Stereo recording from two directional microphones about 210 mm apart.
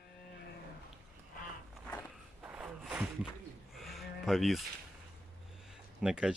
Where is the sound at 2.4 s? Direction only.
5° right (ahead or behind).